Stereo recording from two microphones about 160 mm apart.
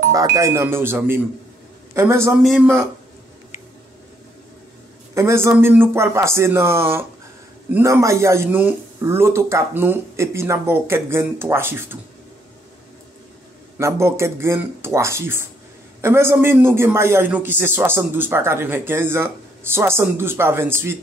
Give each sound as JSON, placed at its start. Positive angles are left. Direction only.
{"t": 0.1, "sound": "a man's voice", "side_deg": -20}
{"t": 5.1, "sound": "a man's voice", "side_deg": -15}
{"t": 13.7, "sound": "a man's voice", "side_deg": -15}